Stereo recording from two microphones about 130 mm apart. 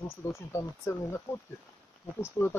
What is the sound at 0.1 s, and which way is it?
Speech, 20° left (ahead or behind).